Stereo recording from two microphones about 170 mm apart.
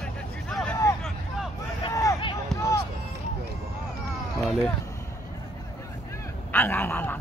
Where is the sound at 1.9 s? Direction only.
20° left (ahead or behind).